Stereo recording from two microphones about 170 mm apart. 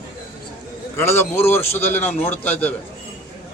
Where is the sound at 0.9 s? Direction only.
15° left (ahead or behind).